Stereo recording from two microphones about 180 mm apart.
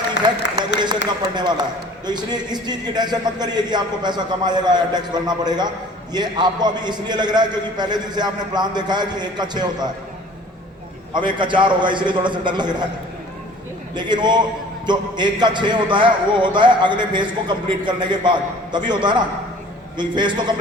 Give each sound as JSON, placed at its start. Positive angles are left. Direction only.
{"t": 0.2, "sound": "a sound", "side_deg": 90}
{"t": 1.4, "sound": "a man's voice", "side_deg": -25}
{"t": 11.1, "sound": "a man's voice", "side_deg": -25}
{"t": 13.9, "sound": "a man's voice", "side_deg": -25}